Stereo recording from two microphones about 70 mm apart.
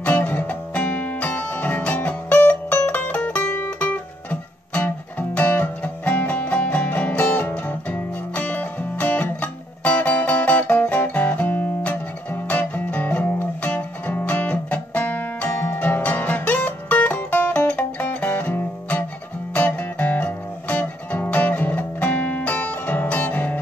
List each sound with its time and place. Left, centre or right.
0.0 s music: left